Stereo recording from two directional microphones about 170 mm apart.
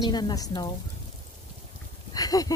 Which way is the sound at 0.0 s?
25° left (ahead or behind).